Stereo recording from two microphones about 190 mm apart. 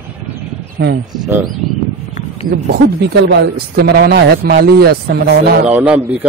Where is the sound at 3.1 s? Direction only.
65° right (ahead or behind).